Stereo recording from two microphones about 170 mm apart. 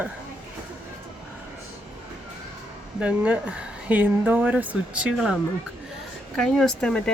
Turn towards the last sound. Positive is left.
turn(degrees=5)  # may be behind; listen again after turning